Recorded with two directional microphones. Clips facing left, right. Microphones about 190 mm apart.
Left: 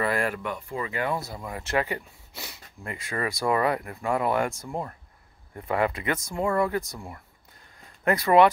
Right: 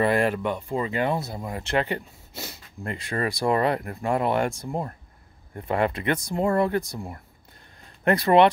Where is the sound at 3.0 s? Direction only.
30° right (ahead or behind).